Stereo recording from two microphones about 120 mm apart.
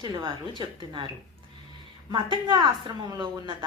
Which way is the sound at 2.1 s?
40° right (ahead or behind).